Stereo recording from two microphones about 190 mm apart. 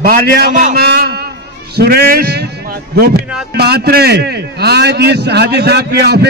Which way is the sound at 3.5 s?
55° right (ahead or behind).